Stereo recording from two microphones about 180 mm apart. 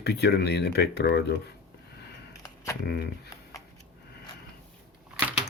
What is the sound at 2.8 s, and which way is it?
Speech, 65° left (ahead or behind).